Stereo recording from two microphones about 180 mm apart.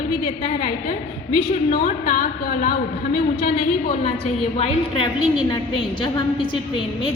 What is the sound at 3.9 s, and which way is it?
A woman's voice, 35° left (ahead or behind).